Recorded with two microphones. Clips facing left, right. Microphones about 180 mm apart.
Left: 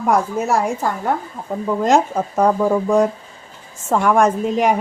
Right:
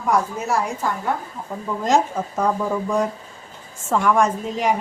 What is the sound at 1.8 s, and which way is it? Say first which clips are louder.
A woman's voice: left 3 dB; 55° left (ahead or behind).